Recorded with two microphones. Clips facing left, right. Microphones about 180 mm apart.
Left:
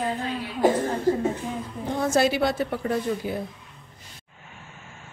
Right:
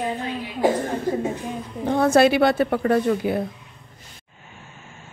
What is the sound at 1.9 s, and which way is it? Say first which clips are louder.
Speech: right 6 dB; 65° right (ahead or behind).